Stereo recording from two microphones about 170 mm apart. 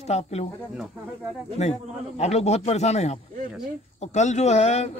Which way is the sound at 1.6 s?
40° left (ahead or behind).